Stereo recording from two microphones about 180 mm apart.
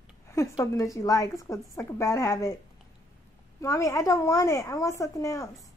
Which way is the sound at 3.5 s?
15° left (ahead or behind).